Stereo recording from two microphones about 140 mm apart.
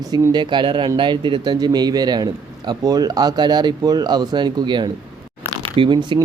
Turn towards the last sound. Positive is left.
turn(degrees=-30)  # may be behind; listen again after turning